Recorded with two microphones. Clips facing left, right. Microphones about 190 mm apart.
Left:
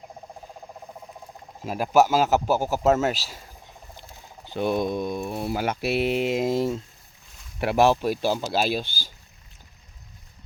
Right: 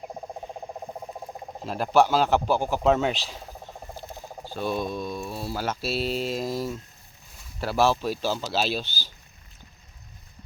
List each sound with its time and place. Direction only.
1.6 s speech: 10° left (ahead or behind)
4.5 s mantra: 15° left (ahead or behind)
7.7 s speech: 15° left (ahead or behind)